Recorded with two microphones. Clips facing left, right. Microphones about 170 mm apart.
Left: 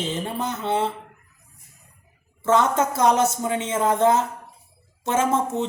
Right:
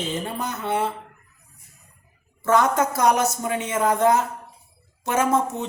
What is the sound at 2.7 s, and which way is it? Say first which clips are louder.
Speech: left 1 dB; 25° left (ahead or behind).